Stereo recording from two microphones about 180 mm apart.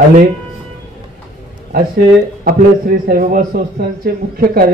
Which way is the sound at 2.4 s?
55° right (ahead or behind).